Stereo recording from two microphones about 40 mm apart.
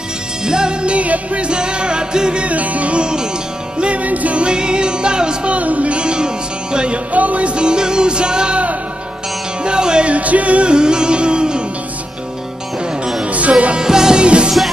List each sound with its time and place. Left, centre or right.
0.5 s music: right
2.4 s music: right
3.8 s music: right
4.4 s music: right
5.5 s music: right
7.1 s music: right
9.6 s music: right
10.1 s music: right
10.7 s music: right
13.2 s music: right
13.8 s music: centre